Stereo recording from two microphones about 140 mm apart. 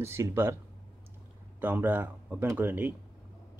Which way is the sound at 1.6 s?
15° right (ahead or behind).